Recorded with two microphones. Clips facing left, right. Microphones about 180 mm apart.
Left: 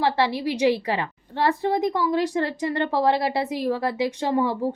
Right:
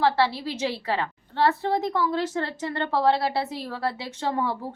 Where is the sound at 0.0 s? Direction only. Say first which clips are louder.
Left 1 dB; 15° left (ahead or behind).